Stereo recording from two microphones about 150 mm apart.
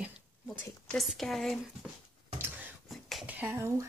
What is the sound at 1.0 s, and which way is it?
Speech, centre (ahead or behind).